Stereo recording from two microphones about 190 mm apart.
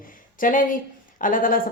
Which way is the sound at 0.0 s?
45° left (ahead or behind).